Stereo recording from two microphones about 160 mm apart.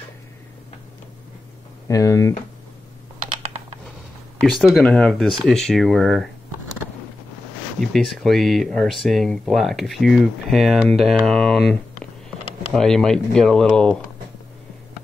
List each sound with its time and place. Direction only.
1.9 s speech: 20° left (ahead or behind)
4.4 s speech: centre (ahead or behind)
7.8 s speech: centre (ahead or behind)